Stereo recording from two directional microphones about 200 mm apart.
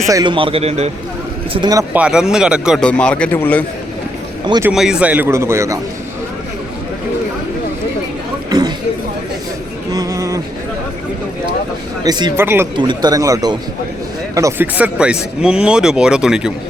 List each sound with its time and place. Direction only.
0.1 s speech: 20° right (ahead or behind)
1.9 s a man's voice: 5° right (ahead or behind)
4.4 s speech: 20° right (ahead or behind)
4.7 s a man's voice: 5° right (ahead or behind)
8.4 s a sound: 20° right (ahead or behind)
9.9 s a sound: 15° right (ahead or behind)
12.0 s a man's voice: 20° right (ahead or behind); by 16.5 s 5° right (ahead or behind)